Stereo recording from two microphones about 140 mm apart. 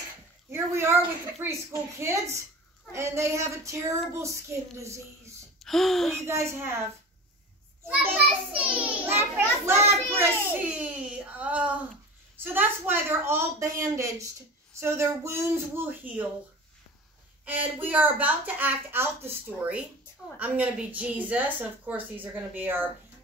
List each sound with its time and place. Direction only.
0.5 s a woman's voice: 20° right (ahead or behind)
5.6 s gasp: centre (ahead or behind)
6.2 s a woman's voice: 20° right (ahead or behind)
8.0 s a child's voice: 10° right (ahead or behind)
17.5 s a child's voice: 10° right (ahead or behind)
20.3 s a child's voice: 10° right (ahead or behind)